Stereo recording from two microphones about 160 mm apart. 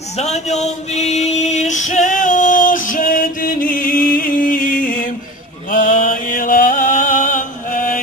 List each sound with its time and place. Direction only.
0.2 s female singing: 45° left (ahead or behind); by 4.9 s 60° left (ahead or behind)
5.7 s mantra: 55° left (ahead or behind)